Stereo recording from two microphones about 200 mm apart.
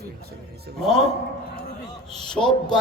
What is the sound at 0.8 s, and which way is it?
Speech, centre (ahead or behind).